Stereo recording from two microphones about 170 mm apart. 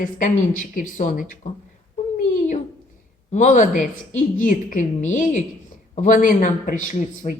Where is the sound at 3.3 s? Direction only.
45° left (ahead or behind).